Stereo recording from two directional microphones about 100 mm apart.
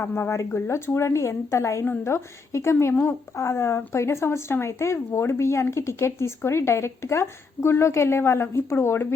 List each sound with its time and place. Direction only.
0.0 s speech: 25° left (ahead or behind)